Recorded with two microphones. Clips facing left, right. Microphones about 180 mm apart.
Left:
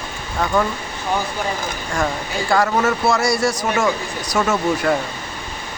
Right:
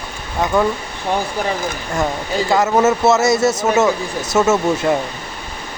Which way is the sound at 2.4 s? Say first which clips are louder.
Right 3 dB; 20° right (ahead or behind).